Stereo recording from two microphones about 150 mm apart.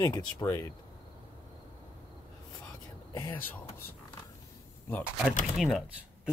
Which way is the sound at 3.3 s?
10° left (ahead or behind).